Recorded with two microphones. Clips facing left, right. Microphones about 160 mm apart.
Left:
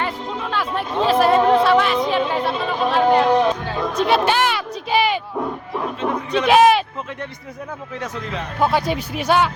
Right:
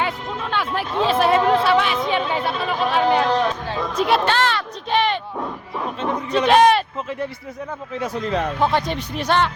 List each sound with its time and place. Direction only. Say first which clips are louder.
0.0 s music: even; centre (ahead or behind)
1.0 s a woman's voice: left 2 dB; centre (ahead or behind)
3.2 s music: left 4 dB; 15° left (ahead or behind)
3.7 s music: left 1 dB; centre (ahead or behind)
4.3 s a sound: left 1 dB; 10° left (ahead or behind)
6.4 s speech: left 1 dB; 5° left (ahead or behind)
7.9 s speech: right 4 dB; 10° right (ahead or behind)
8.6 s a woman's voice: left 6 dB; 5° left (ahead or behind)